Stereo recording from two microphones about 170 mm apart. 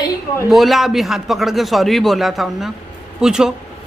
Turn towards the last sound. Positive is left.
turn(degrees=-5)  # may be behind; listen again after turning